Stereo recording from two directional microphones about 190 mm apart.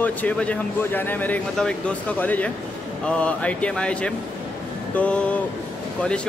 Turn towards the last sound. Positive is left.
turn(degrees=5)  # may be behind; listen again after turning